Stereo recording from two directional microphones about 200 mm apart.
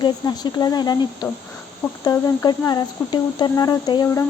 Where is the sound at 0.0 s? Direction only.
20° left (ahead or behind).